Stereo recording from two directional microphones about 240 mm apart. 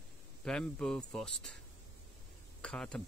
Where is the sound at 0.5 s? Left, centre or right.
Centre.